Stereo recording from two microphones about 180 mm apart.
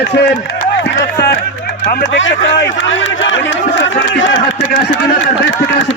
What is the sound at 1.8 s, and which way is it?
Speech, 45° left (ahead or behind).